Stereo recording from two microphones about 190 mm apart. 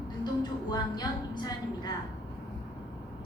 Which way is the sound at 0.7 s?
20° left (ahead or behind).